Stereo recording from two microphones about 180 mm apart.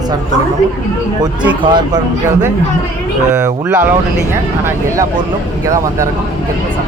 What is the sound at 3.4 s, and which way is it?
Speech, 15° right (ahead or behind).